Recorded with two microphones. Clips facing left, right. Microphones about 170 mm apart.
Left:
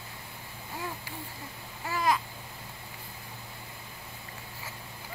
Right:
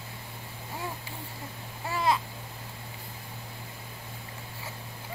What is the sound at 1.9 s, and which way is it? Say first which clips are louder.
Babbling: right 1 dB; 25° right (ahead or behind).